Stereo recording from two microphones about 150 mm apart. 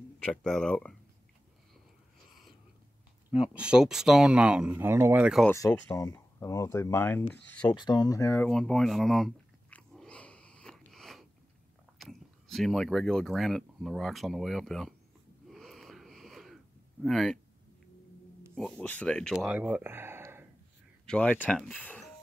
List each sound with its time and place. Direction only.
0.2 s speech: 5° left (ahead or behind)
3.4 s speech: 5° right (ahead or behind)
5.9 s speech: 20° left (ahead or behind)
7.7 s speech: 30° left (ahead or behind)
8.5 s chewing: 5° left (ahead or behind)
12.0 s speech: centre (ahead or behind)
15.4 s wheeze: centre (ahead or behind)
17.0 s speech: centre (ahead or behind)
18.5 s speech: 5° left (ahead or behind)
19.3 s speech: 5° right (ahead or behind)
21.1 s speech: 10° left (ahead or behind)